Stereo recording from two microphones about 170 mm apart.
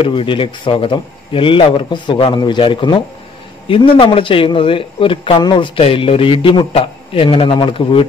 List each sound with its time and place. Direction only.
0.0 s speech: 30° left (ahead or behind)